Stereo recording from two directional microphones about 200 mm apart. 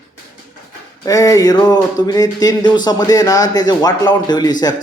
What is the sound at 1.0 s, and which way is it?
Speech, 15° left (ahead or behind).